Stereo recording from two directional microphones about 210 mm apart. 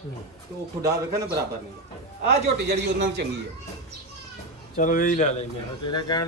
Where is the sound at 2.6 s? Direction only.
50° right (ahead or behind).